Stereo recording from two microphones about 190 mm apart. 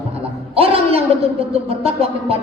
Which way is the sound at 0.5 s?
30° right (ahead or behind).